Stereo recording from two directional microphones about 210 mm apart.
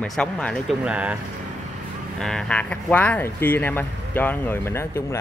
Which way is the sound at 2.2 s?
5° left (ahead or behind).